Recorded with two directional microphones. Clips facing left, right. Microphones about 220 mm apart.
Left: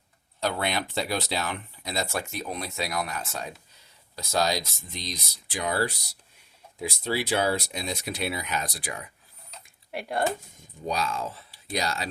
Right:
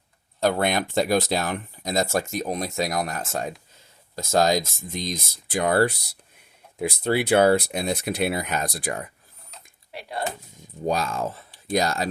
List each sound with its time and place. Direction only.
0.3 s speech: 50° right (ahead or behind)
9.9 s speech: 55° left (ahead or behind)
10.8 s speech: 45° right (ahead or behind)